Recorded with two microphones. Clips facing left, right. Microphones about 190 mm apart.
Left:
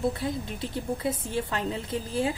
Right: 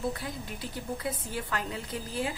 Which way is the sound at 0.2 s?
25° left (ahead or behind).